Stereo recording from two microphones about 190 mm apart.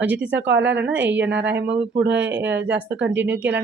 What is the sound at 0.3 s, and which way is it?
Speech, 70° right (ahead or behind).